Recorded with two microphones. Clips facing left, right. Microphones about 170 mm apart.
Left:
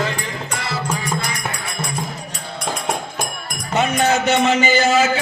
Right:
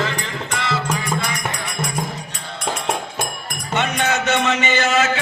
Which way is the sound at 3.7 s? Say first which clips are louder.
Left 3 dB; 35° left (ahead or behind).